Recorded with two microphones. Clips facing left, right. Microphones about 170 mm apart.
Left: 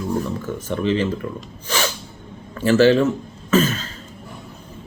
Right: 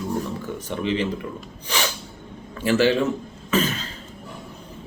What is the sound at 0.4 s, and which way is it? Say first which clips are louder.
Speech: left 4 dB; 15° right (ahead or behind).